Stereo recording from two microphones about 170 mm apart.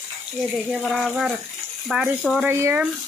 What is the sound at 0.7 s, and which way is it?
Speech, centre (ahead or behind).